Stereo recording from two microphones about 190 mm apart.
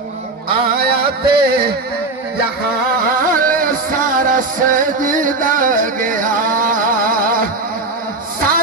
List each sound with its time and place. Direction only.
0.7 s music: 55° right (ahead or behind)
3.2 s music: 45° right (ahead or behind)